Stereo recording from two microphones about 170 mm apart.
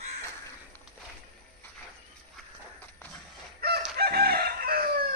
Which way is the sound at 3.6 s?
65° right (ahead or behind).